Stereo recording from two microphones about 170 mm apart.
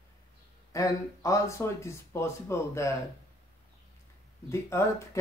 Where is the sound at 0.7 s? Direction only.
20° left (ahead or behind).